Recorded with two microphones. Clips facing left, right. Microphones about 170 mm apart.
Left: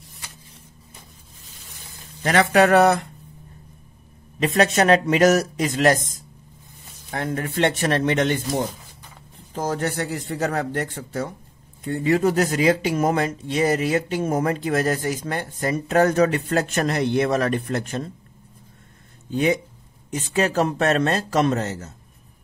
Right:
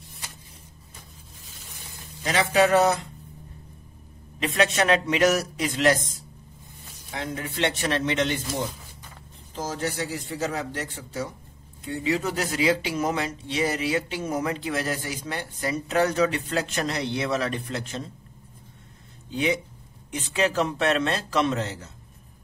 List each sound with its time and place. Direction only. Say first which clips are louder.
2.2 s a man's voice: left 4 dB; 55° left (ahead or behind)
4.4 s a man's voice: left 5 dB; 40° left (ahead or behind)
19.3 s speech: left 5 dB; 45° left (ahead or behind)